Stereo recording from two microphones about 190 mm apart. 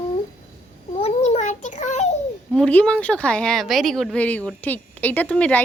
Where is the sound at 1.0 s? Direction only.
35° left (ahead or behind).